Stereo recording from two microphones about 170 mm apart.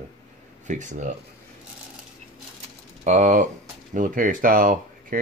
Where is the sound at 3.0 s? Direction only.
45° right (ahead or behind).